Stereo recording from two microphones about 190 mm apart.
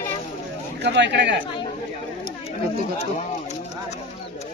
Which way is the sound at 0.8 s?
65° right (ahead or behind).